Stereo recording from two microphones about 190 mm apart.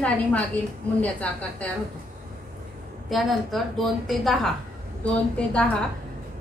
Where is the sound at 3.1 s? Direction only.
Centre (ahead or behind).